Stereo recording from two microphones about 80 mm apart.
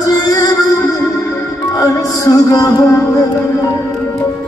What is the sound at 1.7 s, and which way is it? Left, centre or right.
Music, left.